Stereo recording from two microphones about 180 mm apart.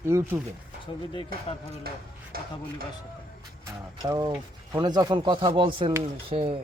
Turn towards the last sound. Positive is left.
turn(degrees=-30)  # may be behind; listen again after turning